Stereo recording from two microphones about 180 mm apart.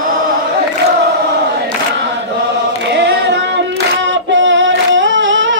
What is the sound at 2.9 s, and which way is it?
Singing, 70° right (ahead or behind).